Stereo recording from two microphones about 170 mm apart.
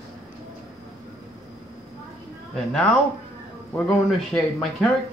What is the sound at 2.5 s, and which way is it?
Speech, centre (ahead or behind).